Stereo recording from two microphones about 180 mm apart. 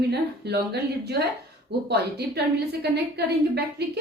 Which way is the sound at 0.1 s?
65° right (ahead or behind).